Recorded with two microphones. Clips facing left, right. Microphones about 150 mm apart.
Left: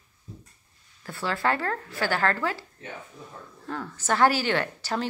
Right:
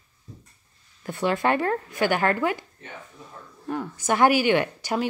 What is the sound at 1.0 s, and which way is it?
Speech, 20° right (ahead or behind).